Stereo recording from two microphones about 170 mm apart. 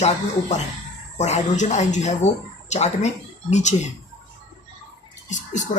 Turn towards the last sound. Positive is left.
turn(degrees=45)  # may be behind; listen again after turning